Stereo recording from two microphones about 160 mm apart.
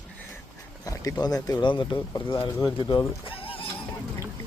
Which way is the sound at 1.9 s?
20° left (ahead or behind).